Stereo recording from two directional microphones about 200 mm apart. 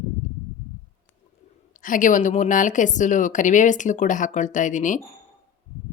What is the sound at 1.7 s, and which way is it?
Speech, 40° left (ahead or behind).